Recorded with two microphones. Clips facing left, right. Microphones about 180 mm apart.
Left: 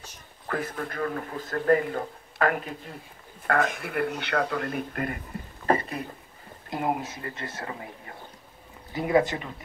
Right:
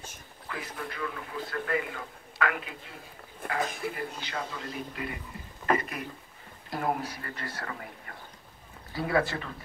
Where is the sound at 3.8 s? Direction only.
65° left (ahead or behind).